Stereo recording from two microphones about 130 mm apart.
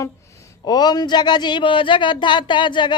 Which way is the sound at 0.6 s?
30° left (ahead or behind).